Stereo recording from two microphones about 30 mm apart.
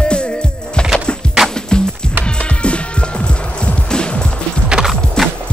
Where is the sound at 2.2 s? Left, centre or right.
Left.